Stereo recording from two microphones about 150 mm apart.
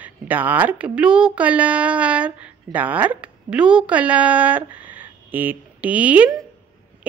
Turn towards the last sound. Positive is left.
turn(degrees=-10)  # may be behind; listen again after turning